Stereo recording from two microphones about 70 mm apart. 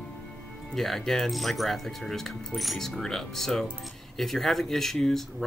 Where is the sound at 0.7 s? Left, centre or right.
Centre.